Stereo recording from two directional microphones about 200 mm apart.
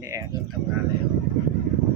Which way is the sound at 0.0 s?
15° right (ahead or behind).